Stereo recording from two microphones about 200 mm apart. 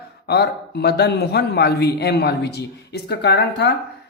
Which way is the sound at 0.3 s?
55° left (ahead or behind).